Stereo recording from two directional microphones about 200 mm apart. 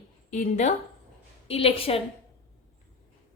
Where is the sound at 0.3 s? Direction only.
35° left (ahead or behind).